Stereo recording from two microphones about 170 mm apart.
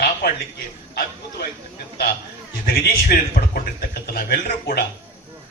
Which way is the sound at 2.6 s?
55° left (ahead or behind).